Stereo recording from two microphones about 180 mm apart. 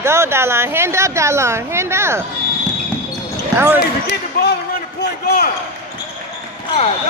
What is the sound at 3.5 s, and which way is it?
Speech, 10° right (ahead or behind).